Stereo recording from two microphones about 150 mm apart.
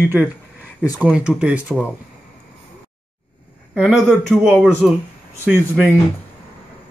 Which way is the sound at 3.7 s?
5° right (ahead or behind).